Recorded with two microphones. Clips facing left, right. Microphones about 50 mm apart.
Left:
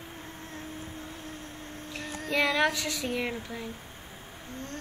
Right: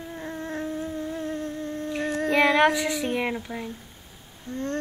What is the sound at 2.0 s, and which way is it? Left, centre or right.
Child singing, right.